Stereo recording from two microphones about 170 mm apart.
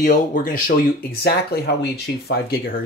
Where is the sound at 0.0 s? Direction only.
50° left (ahead or behind).